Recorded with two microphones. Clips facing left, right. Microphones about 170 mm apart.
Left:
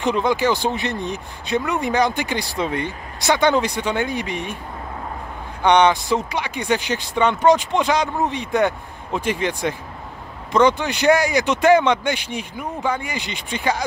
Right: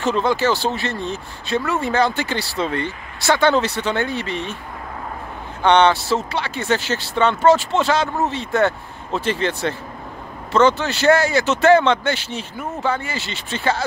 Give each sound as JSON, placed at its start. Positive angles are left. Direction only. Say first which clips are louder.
{"t": 0.0, "sound": "speech", "louder": "even", "side_deg": 15}
{"t": 5.6, "sound": "speech", "louder": "right 1 dB", "side_deg": 15}